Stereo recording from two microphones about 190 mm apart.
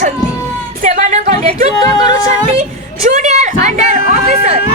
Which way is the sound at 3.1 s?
40° right (ahead or behind).